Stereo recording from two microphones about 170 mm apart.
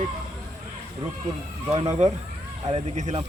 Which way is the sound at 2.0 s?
45° right (ahead or behind).